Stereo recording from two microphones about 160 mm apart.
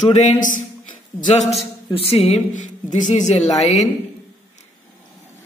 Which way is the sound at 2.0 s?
35° left (ahead or behind).